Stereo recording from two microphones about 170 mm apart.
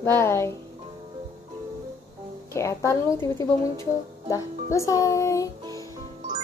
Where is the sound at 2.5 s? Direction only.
15° left (ahead or behind).